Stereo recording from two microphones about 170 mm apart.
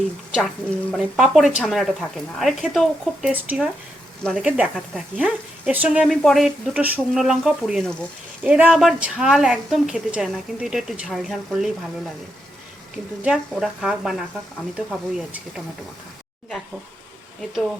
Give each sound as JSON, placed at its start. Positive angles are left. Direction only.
{"t": 0.3, "sound": "a woman's voice", "side_deg": 0}
{"t": 13.2, "sound": "a woman's voice", "side_deg": 0}